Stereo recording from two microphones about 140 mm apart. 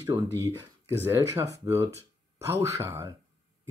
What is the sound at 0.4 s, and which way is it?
Speech, 15° right (ahead or behind).